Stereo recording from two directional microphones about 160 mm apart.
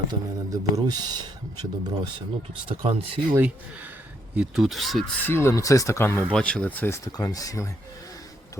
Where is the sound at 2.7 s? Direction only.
35° right (ahead or behind).